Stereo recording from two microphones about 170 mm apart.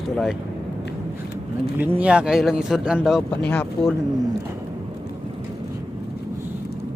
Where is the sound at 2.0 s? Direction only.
5° right (ahead or behind).